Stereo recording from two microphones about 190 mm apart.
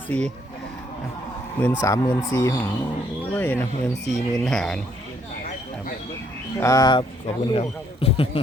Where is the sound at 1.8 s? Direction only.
15° left (ahead or behind).